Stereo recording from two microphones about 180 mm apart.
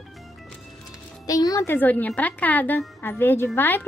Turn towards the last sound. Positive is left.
turn(degrees=10)  # may be behind; listen again after turning